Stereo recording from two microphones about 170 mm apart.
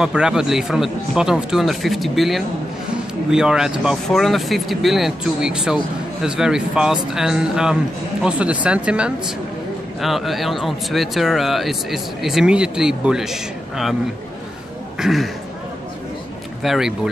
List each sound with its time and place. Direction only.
0.0 s speech: 5° right (ahead or behind)
15.0 s speech: centre (ahead or behind)
16.6 s speech: centre (ahead or behind)